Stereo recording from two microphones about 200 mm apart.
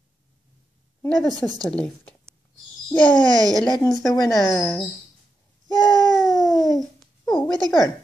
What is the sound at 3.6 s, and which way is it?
Speech, 20° left (ahead or behind).